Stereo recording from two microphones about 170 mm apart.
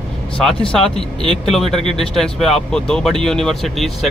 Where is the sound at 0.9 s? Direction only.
35° left (ahead or behind).